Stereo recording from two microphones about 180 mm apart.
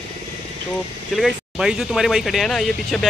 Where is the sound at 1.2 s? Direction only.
5° right (ahead or behind).